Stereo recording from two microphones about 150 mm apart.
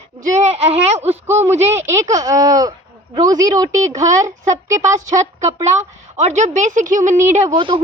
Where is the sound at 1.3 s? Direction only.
15° right (ahead or behind).